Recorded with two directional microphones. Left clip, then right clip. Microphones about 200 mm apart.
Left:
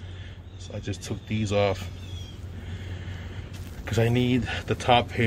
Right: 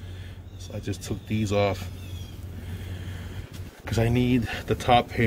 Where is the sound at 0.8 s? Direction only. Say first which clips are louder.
Right 2 dB; 5° right (ahead or behind).